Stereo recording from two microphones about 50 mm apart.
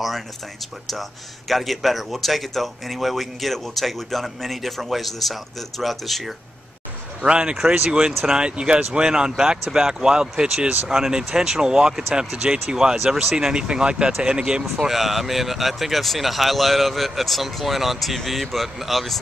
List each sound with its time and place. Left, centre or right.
1.5 s speech: centre
7.2 s speech: centre
14.6 s speech: centre